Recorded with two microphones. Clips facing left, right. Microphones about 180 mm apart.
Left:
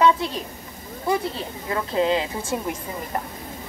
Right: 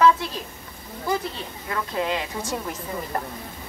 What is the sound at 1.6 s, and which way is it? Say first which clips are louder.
Speech: left 5 dB; 25° left (ahead or behind).